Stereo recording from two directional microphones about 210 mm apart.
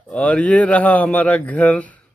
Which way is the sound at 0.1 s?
5° left (ahead or behind).